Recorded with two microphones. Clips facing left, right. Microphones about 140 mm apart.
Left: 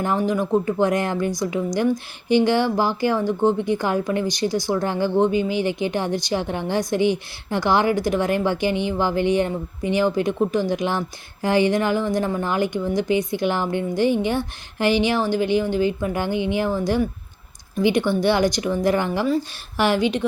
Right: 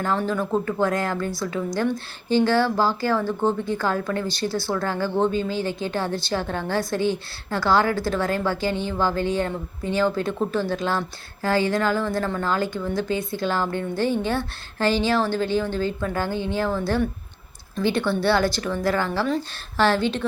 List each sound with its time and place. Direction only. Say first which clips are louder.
0.0 s a woman's voice: left 3 dB; 15° left (ahead or behind)